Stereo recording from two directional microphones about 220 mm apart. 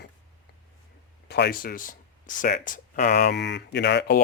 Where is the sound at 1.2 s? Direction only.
45° left (ahead or behind).